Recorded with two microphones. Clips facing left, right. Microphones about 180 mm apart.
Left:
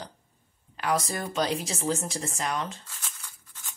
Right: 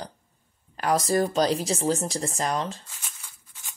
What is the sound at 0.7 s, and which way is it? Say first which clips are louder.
Speech: right 6 dB; 40° right (ahead or behind).